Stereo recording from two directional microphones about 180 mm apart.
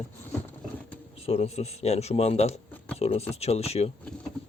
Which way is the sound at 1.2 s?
35° left (ahead or behind).